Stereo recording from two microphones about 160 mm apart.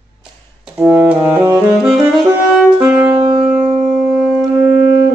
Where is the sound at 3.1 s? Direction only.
25° right (ahead or behind).